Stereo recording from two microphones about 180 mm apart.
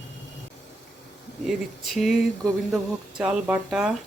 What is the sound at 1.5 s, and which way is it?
Speech, centre (ahead or behind).